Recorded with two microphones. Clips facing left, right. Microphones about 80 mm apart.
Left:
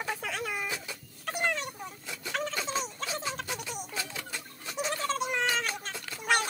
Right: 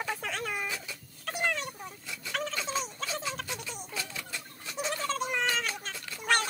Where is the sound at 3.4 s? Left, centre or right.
Centre.